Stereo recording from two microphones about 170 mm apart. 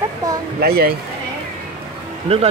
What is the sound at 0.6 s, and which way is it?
Speech, 65° right (ahead or behind).